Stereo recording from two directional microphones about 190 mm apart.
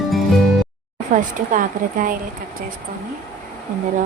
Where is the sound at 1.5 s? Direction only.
45° right (ahead or behind).